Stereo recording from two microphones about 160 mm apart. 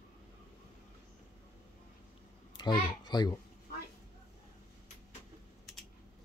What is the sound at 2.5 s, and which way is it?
Speech, 25° left (ahead or behind).